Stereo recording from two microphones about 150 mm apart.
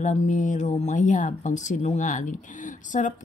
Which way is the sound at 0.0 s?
55° left (ahead or behind).